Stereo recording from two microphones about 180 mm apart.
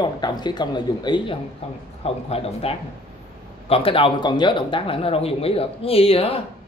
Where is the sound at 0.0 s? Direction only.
25° left (ahead or behind).